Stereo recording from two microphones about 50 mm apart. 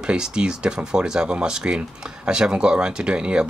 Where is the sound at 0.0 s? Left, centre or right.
Centre.